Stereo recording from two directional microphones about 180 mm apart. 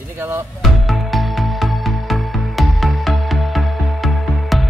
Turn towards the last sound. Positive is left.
turn(degrees=0)  # may be behind; listen again after turning